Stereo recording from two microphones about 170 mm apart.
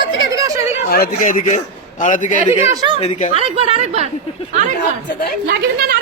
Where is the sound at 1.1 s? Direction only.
50° left (ahead or behind).